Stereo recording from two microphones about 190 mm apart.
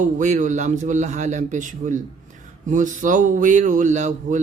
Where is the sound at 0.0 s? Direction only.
40° right (ahead or behind).